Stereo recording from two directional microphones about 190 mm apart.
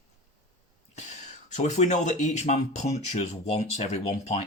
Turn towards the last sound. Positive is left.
turn(degrees=35)  # may be behind; listen again after turning